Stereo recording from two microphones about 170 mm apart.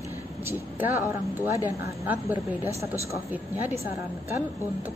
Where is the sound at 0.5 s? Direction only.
10° right (ahead or behind).